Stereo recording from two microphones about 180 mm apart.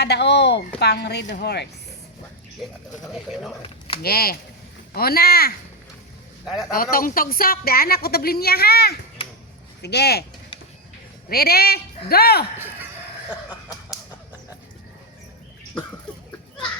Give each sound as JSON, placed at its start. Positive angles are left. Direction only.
{"t": 0.0, "sound": "a woman's voice", "side_deg": 70}
{"t": 3.6, "sound": "a sound", "side_deg": 30}
{"t": 4.0, "sound": "a woman's voice", "side_deg": 60}
{"t": 6.4, "sound": "a man's voice", "side_deg": 0}
{"t": 6.9, "sound": "a woman's voice", "side_deg": 50}
{"t": 11.3, "sound": "a woman's voice", "side_deg": 60}
{"t": 12.5, "sound": "chicken", "side_deg": -10}